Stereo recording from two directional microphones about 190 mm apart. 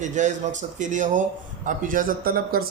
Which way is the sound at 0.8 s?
40° right (ahead or behind).